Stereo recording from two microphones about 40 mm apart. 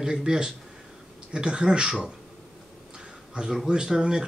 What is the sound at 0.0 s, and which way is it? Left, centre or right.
A man's voice, centre.